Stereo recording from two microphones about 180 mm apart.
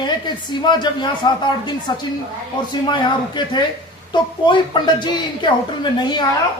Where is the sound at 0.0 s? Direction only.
25° left (ahead or behind).